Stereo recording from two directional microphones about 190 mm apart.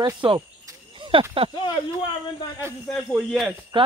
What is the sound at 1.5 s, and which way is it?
Speech, 25° left (ahead or behind).